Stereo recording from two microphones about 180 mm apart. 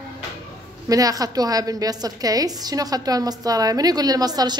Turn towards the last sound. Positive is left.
turn(degrees=-20)  # may be behind; listen again after turning